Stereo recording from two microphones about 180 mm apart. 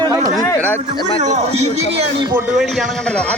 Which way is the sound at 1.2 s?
40° right (ahead or behind).